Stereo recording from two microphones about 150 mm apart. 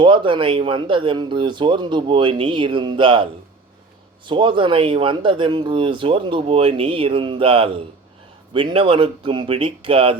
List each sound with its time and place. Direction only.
0.0 s speech: 35° right (ahead or behind)
4.3 s speech: 35° right (ahead or behind)